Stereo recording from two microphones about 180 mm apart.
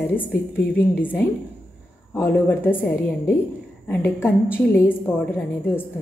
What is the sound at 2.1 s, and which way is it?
A woman's voice, 15° left (ahead or behind).